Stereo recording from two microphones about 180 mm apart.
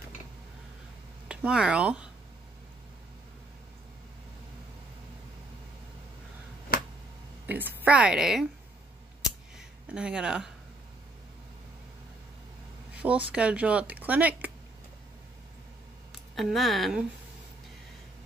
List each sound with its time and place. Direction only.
1.3 s speech: 5° right (ahead or behind)
6.7 s finger snapping: 55° left (ahead or behind)
7.4 s speech: 10° right (ahead or behind)
9.2 s scissors: 5° right (ahead or behind)
12.9 s a sound: 5° right (ahead or behind)
13.3 s speech: 5° right (ahead or behind)
16.1 s speech: centre (ahead or behind)